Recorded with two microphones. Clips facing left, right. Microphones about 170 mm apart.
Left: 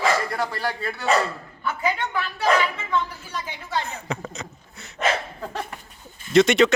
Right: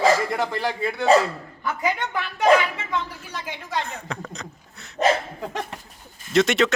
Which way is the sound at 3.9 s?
Centre (ahead or behind).